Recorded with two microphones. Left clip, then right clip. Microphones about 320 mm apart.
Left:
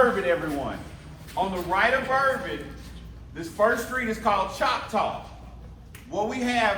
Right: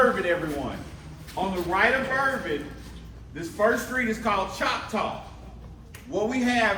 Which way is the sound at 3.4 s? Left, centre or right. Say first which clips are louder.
Left 1 dB; centre.